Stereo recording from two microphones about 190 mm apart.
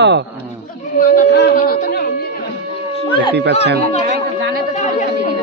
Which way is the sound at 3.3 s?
65° right (ahead or behind).